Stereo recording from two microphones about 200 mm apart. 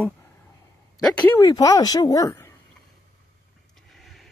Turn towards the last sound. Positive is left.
turn(degrees=0)  # may be behind; listen again after turning